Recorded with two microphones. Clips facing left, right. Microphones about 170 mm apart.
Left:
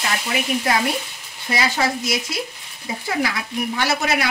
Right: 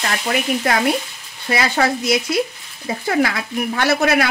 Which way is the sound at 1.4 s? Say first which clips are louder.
Right 3 dB; 60° right (ahead or behind).